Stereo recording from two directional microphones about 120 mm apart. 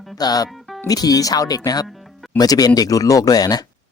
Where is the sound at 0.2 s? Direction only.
35° left (ahead or behind).